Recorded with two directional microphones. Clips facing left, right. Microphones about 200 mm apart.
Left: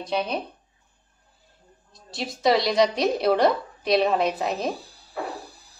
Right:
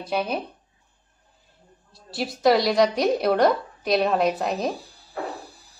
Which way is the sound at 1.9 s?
5° right (ahead or behind).